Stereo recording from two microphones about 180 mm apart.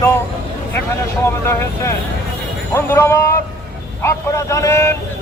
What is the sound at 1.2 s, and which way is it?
Speech, 15° left (ahead or behind).